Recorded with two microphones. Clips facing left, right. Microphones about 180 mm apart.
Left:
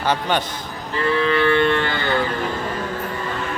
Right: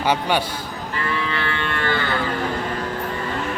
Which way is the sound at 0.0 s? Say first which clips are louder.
Right 1 dB; 10° right (ahead or behind).